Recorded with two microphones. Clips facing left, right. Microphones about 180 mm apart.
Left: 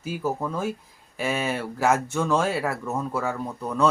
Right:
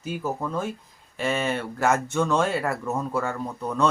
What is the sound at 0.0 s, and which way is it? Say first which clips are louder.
Speech: left 1 dB; 5° left (ahead or behind).